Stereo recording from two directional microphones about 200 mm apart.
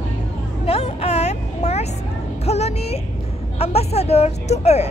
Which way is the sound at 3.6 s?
30° left (ahead or behind).